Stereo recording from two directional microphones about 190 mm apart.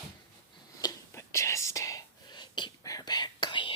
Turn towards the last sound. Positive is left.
turn(degrees=25)  # may be behind; listen again after turning